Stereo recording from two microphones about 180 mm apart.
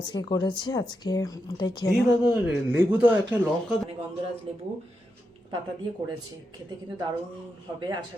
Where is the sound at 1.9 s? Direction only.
Centre (ahead or behind).